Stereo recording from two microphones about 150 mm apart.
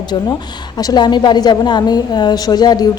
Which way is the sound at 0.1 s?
30° left (ahead or behind).